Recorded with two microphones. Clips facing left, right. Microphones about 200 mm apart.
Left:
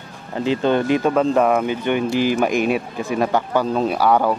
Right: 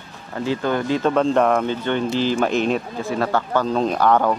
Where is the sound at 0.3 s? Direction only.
20° left (ahead or behind).